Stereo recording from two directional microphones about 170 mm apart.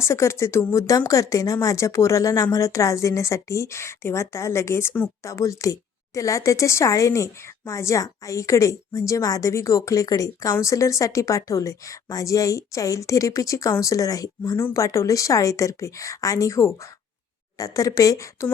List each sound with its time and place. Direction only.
0.0 s speech: 15° left (ahead or behind)